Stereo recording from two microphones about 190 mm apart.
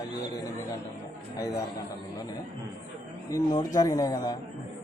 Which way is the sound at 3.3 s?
20° left (ahead or behind).